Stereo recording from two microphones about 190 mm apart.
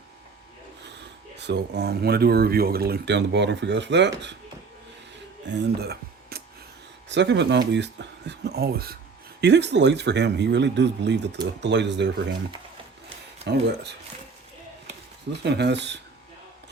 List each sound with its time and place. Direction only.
0.9 s speech: 65° right (ahead or behind)
5.5 s speech: 70° right (ahead or behind)
5.8 s a sound: 55° right (ahead or behind)
7.1 s speech: 65° right (ahead or behind)
13.4 s speech: 65° right (ahead or behind)
15.3 s speech: 65° right (ahead or behind)